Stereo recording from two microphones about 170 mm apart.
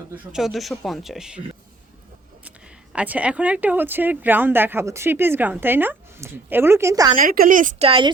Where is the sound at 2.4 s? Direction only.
10° right (ahead or behind).